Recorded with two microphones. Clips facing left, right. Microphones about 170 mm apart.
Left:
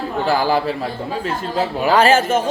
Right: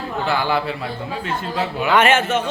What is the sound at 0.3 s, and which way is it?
A man's voice, 40° left (ahead or behind).